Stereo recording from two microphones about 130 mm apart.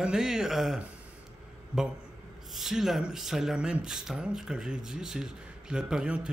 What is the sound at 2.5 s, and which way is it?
Speech, centre (ahead or behind).